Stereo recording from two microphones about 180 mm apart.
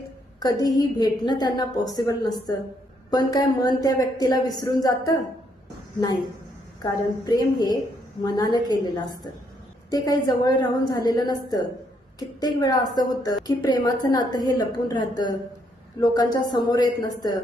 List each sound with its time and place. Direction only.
0.3 s a woman's voice: 20° left (ahead or behind)
6.8 s a woman's voice: 20° left (ahead or behind)